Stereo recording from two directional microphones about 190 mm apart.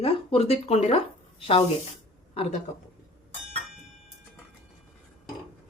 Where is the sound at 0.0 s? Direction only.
30° left (ahead or behind).